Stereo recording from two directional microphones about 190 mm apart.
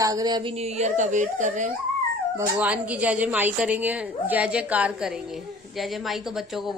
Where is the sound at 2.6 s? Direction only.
5° right (ahead or behind).